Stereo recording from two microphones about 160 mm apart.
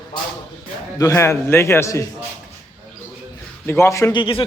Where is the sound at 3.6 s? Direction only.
15° left (ahead or behind).